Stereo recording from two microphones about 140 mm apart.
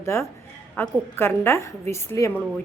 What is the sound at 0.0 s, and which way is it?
A woman's voice, 20° left (ahead or behind).